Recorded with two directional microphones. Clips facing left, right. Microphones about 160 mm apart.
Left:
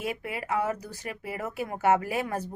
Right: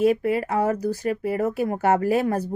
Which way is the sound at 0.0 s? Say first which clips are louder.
Right 13 dB; 40° right (ahead or behind).